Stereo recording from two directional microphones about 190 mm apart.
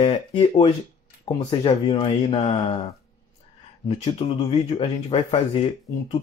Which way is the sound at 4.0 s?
30° left (ahead or behind).